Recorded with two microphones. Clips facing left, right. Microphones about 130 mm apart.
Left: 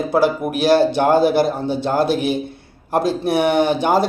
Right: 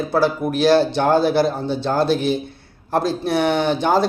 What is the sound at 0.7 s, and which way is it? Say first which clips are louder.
Speech: left 2 dB; 10° left (ahead or behind).